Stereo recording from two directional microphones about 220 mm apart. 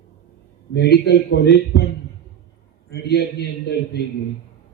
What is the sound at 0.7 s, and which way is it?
Speech, 50° left (ahead or behind).